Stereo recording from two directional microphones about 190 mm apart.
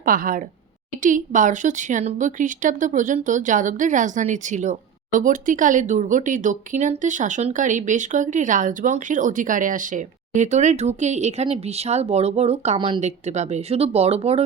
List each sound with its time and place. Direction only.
0.0 s a woman's voice: 45° right (ahead or behind)